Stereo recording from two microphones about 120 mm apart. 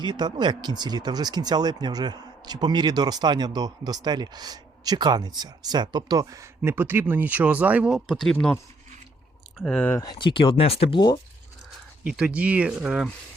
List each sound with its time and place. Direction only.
0.0 s speech: 40° right (ahead or behind); by 8.5 s 5° left (ahead or behind)
9.6 s speech: 10° left (ahead or behind)
10.0 s speech: 40° left (ahead or behind)
12.1 s speech: 10° right (ahead or behind)